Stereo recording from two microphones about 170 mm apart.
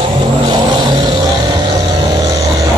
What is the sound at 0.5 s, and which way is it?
Vehicle, 25° right (ahead or behind).